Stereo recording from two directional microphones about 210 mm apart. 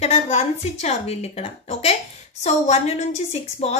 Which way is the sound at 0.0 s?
30° left (ahead or behind).